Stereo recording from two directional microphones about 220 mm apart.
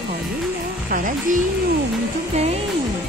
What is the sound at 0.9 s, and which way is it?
Speech, 35° right (ahead or behind).